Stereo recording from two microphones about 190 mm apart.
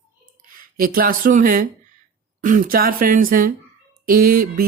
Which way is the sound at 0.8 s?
50° right (ahead or behind).